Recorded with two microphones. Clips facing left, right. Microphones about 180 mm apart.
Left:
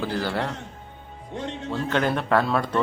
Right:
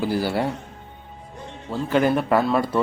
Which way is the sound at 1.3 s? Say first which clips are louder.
Left 9 dB; 85° left.